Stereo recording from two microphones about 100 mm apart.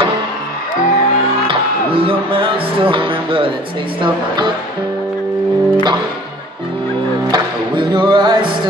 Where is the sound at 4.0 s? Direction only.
50° right (ahead or behind).